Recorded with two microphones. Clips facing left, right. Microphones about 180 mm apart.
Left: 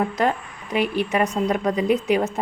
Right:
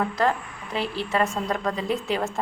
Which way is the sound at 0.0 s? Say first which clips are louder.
Left 2 dB; 20° left (ahead or behind).